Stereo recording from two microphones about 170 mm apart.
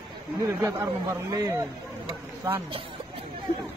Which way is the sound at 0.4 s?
15° right (ahead or behind).